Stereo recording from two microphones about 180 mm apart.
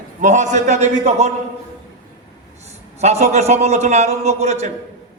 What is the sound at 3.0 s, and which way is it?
A man's voice, 40° right (ahead or behind).